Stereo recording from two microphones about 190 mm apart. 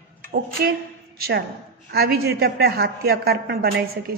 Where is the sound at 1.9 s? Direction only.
55° right (ahead or behind).